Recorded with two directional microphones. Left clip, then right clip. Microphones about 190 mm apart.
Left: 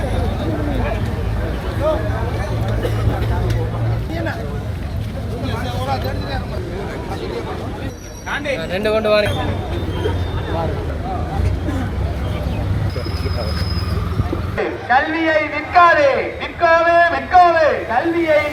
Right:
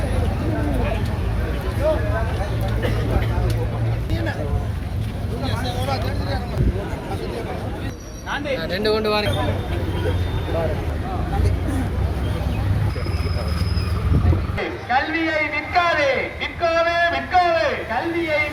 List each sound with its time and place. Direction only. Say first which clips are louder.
8.7 s speech: left 5 dB; 30° left (ahead or behind)
14.6 s a man's voice: left 5 dB; centre (ahead or behind)